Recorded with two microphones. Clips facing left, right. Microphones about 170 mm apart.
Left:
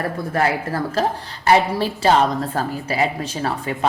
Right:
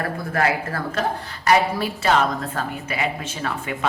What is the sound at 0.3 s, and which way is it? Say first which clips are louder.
A woman's voice: left 2 dB; 30° left (ahead or behind).